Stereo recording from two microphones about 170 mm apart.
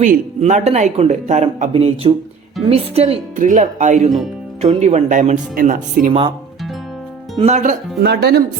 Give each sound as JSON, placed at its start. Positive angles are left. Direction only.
{"t": 0.0, "sound": "speech", "side_deg": -45}
{"t": 1.7, "sound": "speech", "side_deg": -35}
{"t": 3.3, "sound": "speech", "side_deg": -50}
{"t": 7.3, "sound": "speech", "side_deg": -40}
{"t": 8.0, "sound": "speech", "side_deg": -75}